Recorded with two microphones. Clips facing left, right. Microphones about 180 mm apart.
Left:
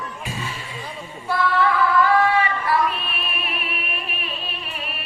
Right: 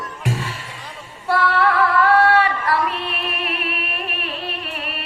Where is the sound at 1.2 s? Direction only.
70° right (ahead or behind).